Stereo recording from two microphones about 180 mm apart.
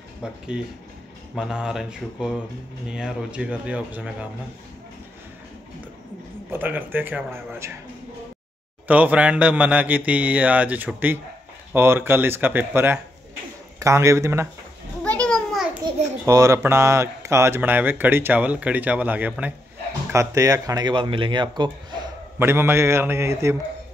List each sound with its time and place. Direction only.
0.2 s speech: 5° right (ahead or behind)
6.5 s speech: 10° right (ahead or behind)
8.8 s speech: 10° right (ahead or behind)
15.0 s a sound: 5° left (ahead or behind)
16.3 s speech: 15° right (ahead or behind)
22.4 s speech: 15° right (ahead or behind)